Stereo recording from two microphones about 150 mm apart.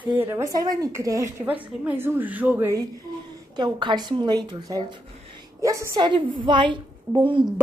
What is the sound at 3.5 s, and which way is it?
A woman's voice, 30° right (ahead or behind).